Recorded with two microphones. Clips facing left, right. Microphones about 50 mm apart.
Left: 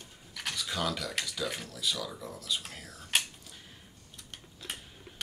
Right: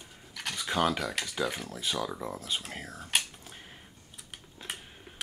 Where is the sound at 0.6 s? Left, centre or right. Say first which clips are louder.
Right 6 dB; right.